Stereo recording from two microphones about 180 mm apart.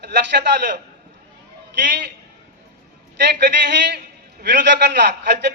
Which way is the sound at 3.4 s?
75° right (ahead or behind).